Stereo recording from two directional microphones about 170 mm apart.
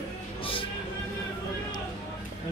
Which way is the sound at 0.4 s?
30° left (ahead or behind).